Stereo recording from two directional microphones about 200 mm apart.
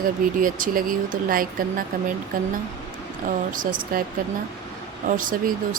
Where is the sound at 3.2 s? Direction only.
40° right (ahead or behind).